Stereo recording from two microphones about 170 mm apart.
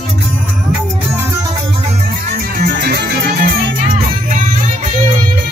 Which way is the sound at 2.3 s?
70° right (ahead or behind).